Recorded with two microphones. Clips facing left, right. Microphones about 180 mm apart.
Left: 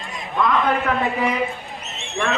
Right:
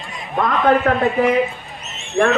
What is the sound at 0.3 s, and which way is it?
Speech, 50° right (ahead or behind).